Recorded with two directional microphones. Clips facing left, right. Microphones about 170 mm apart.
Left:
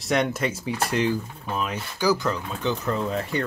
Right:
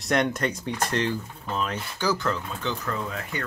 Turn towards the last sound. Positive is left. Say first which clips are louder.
# left 7 dB
turn(degrees=30)  # may be behind; listen again after turning